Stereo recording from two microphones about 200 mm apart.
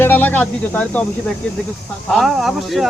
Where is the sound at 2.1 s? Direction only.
Centre (ahead or behind).